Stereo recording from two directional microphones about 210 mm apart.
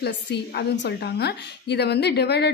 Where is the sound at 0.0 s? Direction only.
55° left (ahead or behind).